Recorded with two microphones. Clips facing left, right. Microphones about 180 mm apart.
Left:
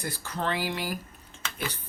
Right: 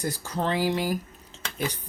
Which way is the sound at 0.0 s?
40° right (ahead or behind).